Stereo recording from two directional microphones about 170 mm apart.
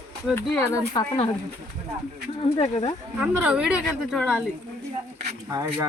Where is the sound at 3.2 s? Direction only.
5° right (ahead or behind).